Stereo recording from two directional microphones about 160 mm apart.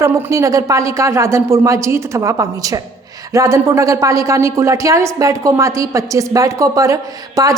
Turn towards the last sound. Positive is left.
turn(degrees=-20)  # may be behind; listen again after turning